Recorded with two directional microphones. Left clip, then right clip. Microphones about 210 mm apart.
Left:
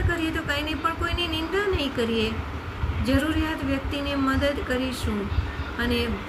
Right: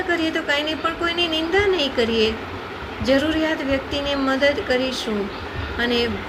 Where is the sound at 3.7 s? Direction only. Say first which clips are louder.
Right 6 dB; 15° left (ahead or behind).